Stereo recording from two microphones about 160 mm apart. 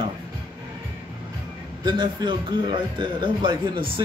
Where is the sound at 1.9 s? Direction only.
25° right (ahead or behind).